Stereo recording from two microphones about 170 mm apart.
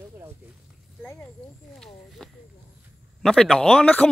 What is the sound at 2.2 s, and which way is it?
Snake, 5° left (ahead or behind).